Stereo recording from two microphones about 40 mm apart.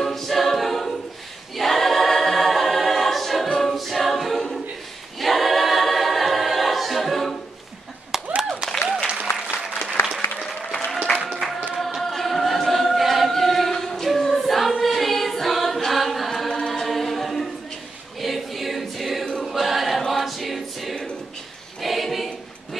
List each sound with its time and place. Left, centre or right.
0.0 s a capella: centre
1.6 s choir: centre
3.7 s choir: centre
8.1 s clapping: centre
8.8 s applause: right
10.4 s applause: centre
11.2 s a sound: centre
11.7 s choir: centre
13.3 s chant: centre
14.0 s choir: centre
16.5 s a capella: centre
16.8 s chant: centre
18.2 s choir: centre